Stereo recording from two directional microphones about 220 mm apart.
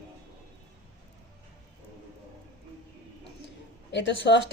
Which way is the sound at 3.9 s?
50° left (ahead or behind).